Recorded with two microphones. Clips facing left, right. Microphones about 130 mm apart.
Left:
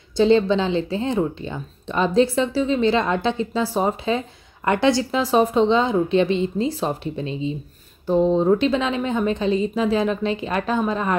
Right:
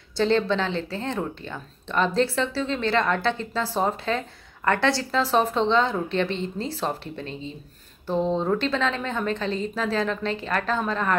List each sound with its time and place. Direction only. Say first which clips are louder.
0.2 s speech: left 5 dB; 15° left (ahead or behind)